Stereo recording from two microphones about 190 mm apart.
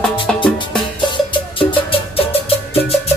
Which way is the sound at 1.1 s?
30° left (ahead or behind).